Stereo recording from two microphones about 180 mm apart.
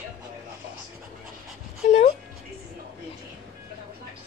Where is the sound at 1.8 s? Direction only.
40° left (ahead or behind).